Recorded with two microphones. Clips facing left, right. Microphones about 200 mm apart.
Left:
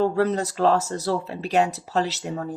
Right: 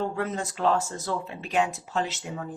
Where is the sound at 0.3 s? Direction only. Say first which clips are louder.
Left 5 dB; 40° left (ahead or behind).